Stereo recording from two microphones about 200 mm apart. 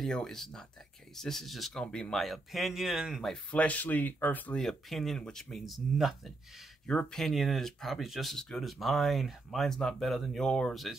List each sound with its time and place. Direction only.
0.0 s speech: 5° left (ahead or behind)